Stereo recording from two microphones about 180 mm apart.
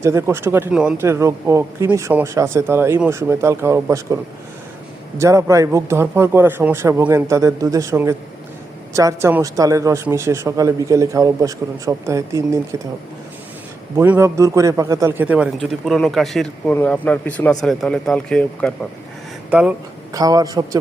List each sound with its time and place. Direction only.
0.0 s a man's voice: 15° right (ahead or behind)
13.9 s a man's voice: 15° right (ahead or behind); by 18.7 s 5° left (ahead or behind)
19.5 s speech: 5° right (ahead or behind)
20.1 s a man's voice: 20° right (ahead or behind)